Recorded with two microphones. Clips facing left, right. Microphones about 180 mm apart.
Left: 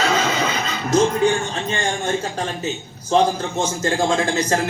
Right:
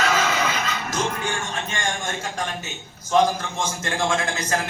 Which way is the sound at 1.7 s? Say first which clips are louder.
Left 7 dB; 30° left (ahead or behind).